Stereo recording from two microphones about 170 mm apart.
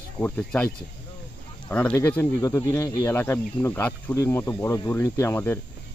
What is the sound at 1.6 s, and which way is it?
Speech, 10° left (ahead or behind).